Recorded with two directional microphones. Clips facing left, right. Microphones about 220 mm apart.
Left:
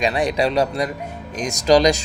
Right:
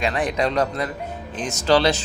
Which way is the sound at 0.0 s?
15° left (ahead or behind).